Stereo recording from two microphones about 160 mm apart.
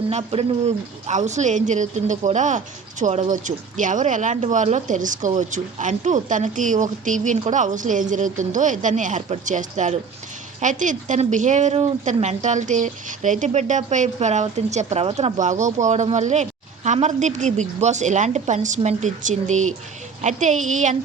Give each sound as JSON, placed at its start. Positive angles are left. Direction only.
{"t": 0.1, "sound": "a woman's voice", "side_deg": -40}